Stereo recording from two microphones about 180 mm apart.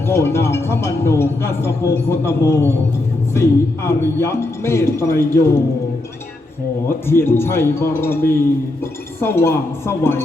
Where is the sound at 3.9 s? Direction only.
15° left (ahead or behind).